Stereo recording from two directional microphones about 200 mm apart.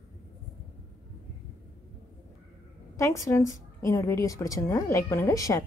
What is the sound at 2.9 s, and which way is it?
A woman's voice, 15° left (ahead or behind).